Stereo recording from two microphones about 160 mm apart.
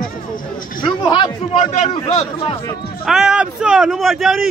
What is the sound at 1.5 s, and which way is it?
A man's voice, 45° left (ahead or behind).